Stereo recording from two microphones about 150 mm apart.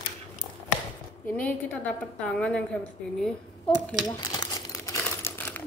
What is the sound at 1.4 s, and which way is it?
A woman's voice, 10° left (ahead or behind).